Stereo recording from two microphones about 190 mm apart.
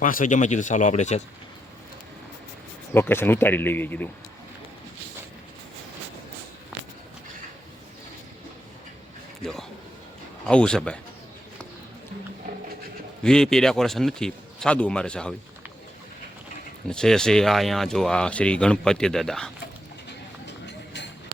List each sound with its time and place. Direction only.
0.0 s speech: 45° left (ahead or behind)
2.9 s speech: 10° left (ahead or behind)
9.4 s a man's voice: centre (ahead or behind)
13.2 s speech: 5° left (ahead or behind)
16.9 s speech: 5° left (ahead or behind)